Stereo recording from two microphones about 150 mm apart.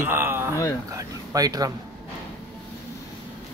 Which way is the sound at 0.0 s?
15° right (ahead or behind).